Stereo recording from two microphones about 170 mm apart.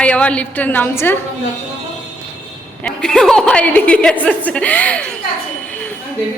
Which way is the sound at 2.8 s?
5° left (ahead or behind).